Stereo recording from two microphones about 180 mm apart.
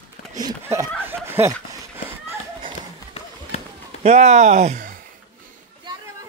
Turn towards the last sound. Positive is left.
turn(degrees=-45)  # may be behind; listen again after turning